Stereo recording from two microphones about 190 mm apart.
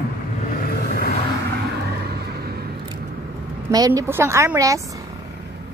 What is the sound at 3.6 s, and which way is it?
A woman's voice, 20° right (ahead or behind).